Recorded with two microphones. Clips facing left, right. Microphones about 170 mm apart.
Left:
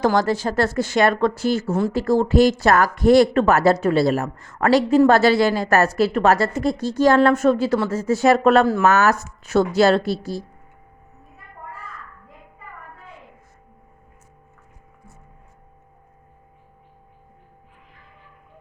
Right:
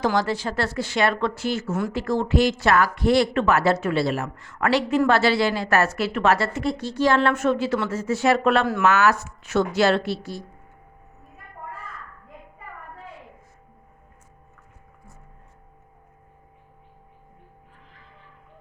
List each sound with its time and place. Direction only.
0.0 s a woman's voice: 45° left (ahead or behind)